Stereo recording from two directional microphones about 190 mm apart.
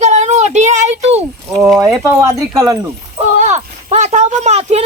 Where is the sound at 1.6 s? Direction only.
Centre (ahead or behind).